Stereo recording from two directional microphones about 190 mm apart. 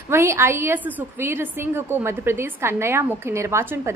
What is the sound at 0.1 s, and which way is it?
A woman's voice, 15° right (ahead or behind).